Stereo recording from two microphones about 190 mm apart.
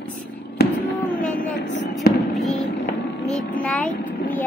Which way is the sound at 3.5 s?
5° left (ahead or behind).